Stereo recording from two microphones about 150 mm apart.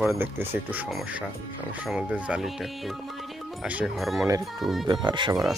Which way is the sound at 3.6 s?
5° right (ahead or behind).